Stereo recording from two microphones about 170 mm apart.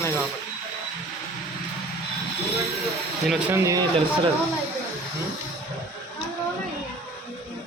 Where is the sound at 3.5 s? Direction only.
20° right (ahead or behind).